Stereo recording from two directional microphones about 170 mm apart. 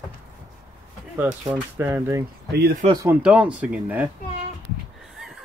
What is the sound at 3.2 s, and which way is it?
Speech, 5° right (ahead or behind).